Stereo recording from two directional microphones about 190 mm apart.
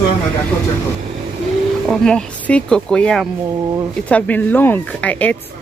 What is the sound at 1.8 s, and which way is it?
Speech, 5° left (ahead or behind).